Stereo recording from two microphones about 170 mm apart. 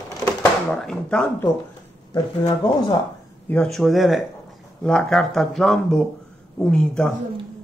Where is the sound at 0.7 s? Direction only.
5° left (ahead or behind).